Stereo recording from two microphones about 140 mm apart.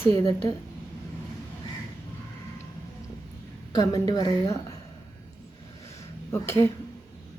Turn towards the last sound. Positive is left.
turn(degrees=15)  # may be behind; listen again after turning